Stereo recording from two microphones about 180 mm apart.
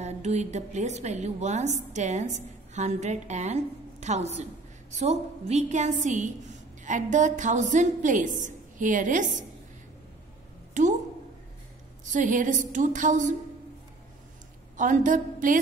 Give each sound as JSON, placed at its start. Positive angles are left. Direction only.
{"t": 0.0, "sound": "a woman's voice", "side_deg": -40}
{"t": 10.7, "sound": "a woman's voice", "side_deg": -40}
{"t": 12.1, "sound": "a woman's voice", "side_deg": -45}
{"t": 14.8, "sound": "a woman's voice", "side_deg": -45}